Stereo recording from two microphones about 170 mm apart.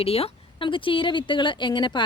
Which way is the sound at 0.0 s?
35° left (ahead or behind).